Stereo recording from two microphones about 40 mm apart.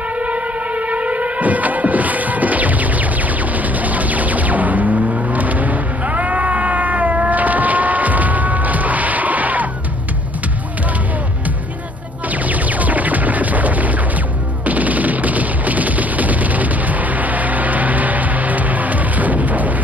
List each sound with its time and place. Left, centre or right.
0.2 s music: right
12.3 s music: right
14.7 s fusillade: right